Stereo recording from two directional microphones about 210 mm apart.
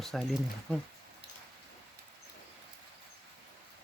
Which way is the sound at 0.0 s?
Centre (ahead or behind).